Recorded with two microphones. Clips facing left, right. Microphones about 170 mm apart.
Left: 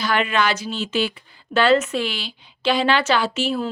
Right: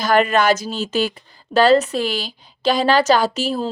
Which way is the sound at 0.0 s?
40° right (ahead or behind).